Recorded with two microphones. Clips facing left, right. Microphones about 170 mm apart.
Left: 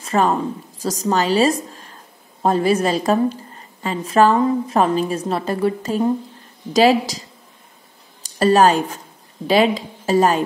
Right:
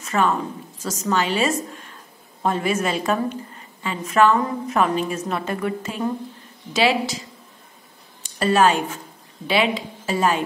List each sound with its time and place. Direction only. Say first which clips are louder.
0.0 s a woman's voice: left 3 dB; 35° left (ahead or behind)